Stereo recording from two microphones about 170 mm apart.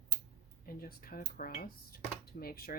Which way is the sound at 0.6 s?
60° left (ahead or behind).